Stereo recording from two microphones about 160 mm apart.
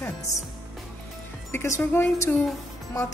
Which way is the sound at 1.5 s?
15° left (ahead or behind).